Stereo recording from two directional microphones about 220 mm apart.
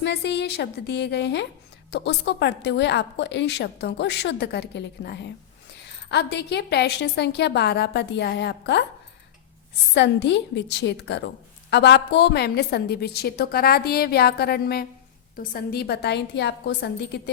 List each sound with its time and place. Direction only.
0.0 s a woman's voice: 50° left (ahead or behind)
9.9 s a woman's voice: 50° left (ahead or behind)